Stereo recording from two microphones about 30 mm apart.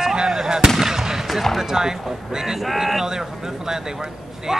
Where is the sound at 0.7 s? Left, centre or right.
Centre.